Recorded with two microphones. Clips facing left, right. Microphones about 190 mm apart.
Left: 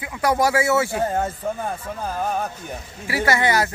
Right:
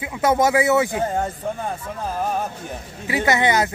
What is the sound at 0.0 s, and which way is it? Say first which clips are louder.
Speech: right 2 dB; 20° right (ahead or behind).